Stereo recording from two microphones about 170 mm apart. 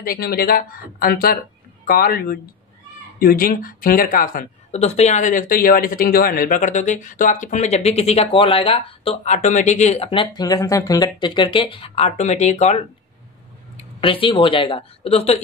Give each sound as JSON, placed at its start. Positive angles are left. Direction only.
{"t": 0.0, "sound": "speech", "side_deg": 60}
{"t": 14.0, "sound": "speech", "side_deg": 30}